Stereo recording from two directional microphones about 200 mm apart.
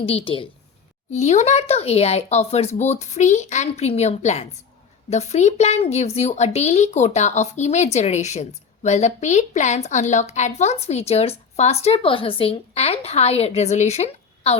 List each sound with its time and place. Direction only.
0.0 s a woman's voice: 30° left (ahead or behind)